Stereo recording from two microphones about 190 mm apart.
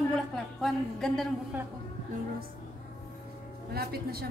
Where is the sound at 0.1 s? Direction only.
Centre (ahead or behind).